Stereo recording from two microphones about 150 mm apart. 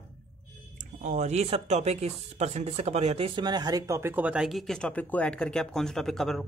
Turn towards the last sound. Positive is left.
turn(degrees=5)  # may be behind; listen again after turning